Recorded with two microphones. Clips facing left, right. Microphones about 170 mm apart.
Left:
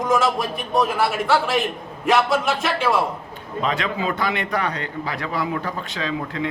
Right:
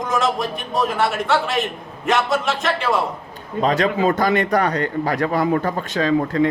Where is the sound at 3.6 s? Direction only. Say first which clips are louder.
Right 6 dB; 40° right (ahead or behind).